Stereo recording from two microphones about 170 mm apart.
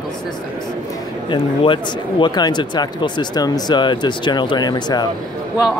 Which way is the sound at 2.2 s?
25° left (ahead or behind).